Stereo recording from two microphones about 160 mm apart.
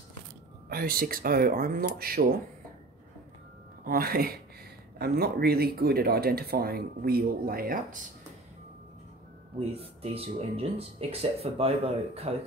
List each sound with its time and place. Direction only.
0.7 s speech: 70° right (ahead or behind)
3.8 s speech: 65° right (ahead or behind)
4.9 s speech: 80° right; by 8.0 s 60° right (ahead or behind)
9.8 s speech: 40° right (ahead or behind)